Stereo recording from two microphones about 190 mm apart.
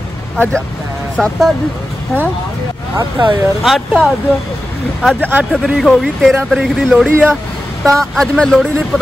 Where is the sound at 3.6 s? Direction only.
Centre (ahead or behind).